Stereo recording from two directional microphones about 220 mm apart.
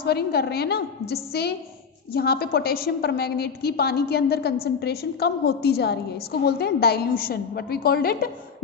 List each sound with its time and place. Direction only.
0.0 s a woman's voice: 45° left (ahead or behind)